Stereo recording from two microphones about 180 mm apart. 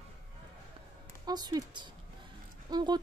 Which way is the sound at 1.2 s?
20° right (ahead or behind).